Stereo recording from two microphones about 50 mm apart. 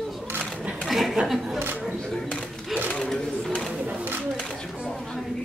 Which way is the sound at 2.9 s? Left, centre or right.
Centre.